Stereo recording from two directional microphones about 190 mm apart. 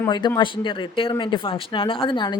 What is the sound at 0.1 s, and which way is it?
Speech, 25° left (ahead or behind).